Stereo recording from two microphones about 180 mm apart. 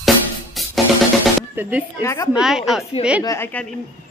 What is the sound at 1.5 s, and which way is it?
Speech, 10° right (ahead or behind).